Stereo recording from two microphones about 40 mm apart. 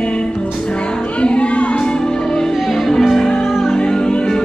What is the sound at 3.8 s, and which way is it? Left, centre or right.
Music, left.